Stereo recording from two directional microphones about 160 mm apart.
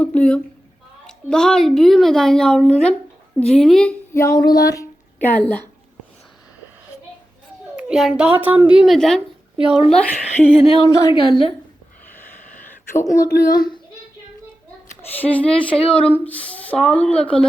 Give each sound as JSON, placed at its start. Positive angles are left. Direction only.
{"t": 0.0, "sound": "a sound", "side_deg": 10}
{"t": 1.0, "sound": "a woman's voice", "side_deg": 5}
{"t": 4.1, "sound": "speech", "side_deg": 20}
{"t": 7.8, "sound": "a woman's voice", "side_deg": -5}
{"t": 10.8, "sound": "a woman's voice", "side_deg": 25}
{"t": 12.0, "sound": "a sound", "side_deg": 10}
{"t": 13.1, "sound": "a woman's voice", "side_deg": 25}
{"t": 15.1, "sound": "speech", "side_deg": 10}